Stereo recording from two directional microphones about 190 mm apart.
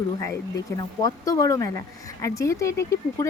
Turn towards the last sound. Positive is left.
turn(degrees=15)  # may be behind; listen again after turning